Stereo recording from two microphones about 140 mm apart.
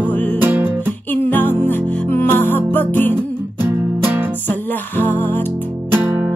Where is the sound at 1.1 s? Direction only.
15° left (ahead or behind).